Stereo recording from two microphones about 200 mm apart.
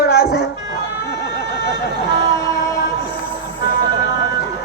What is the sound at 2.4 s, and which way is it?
Music, 15° left (ahead or behind).